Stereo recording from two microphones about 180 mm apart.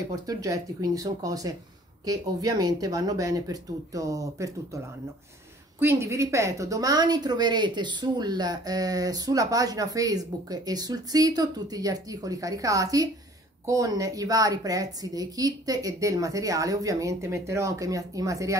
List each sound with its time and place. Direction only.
0.1 s a woman's voice: 20° right (ahead or behind)